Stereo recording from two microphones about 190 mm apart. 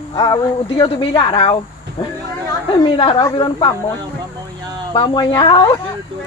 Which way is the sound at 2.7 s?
25° left (ahead or behind).